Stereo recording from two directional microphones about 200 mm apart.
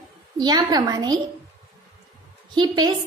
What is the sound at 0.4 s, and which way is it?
Speech, 20° right (ahead or behind).